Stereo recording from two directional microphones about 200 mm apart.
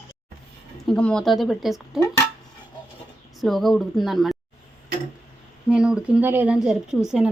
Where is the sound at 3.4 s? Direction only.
Centre (ahead or behind).